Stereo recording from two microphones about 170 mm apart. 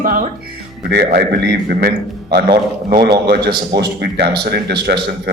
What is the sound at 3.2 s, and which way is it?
Speech, 75° right (ahead or behind).